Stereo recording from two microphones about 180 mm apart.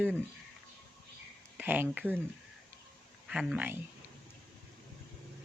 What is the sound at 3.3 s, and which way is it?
Speech, 5° right (ahead or behind).